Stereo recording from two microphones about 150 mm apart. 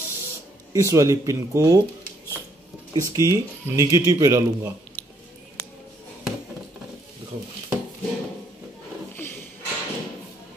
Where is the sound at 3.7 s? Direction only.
20° right (ahead or behind).